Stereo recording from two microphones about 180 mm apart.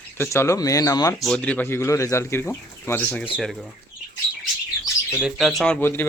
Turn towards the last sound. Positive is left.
turn(degrees=10)  # may be behind; listen again after turning